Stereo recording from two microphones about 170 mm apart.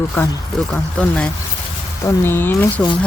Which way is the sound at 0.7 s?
5° left (ahead or behind).